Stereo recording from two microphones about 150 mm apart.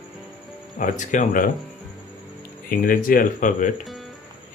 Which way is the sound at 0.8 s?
55° left (ahead or behind).